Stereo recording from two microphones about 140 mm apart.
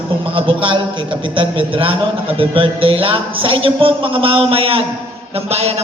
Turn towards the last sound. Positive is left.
turn(degrees=-45)  # may be behind; listen again after turning